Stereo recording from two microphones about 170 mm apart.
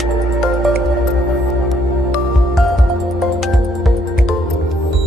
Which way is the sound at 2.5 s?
Centre (ahead or behind).